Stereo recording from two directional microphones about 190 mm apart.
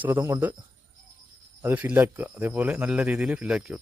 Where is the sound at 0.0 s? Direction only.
10° right (ahead or behind).